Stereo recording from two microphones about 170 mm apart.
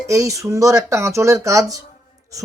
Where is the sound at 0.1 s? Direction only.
20° right (ahead or behind).